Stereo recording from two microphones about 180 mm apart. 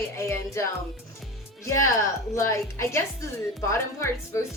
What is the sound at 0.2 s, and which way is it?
Speech, 15° left (ahead or behind).